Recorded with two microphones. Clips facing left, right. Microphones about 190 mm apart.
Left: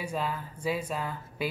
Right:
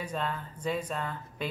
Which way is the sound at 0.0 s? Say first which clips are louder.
Left 1 dB; 10° left (ahead or behind).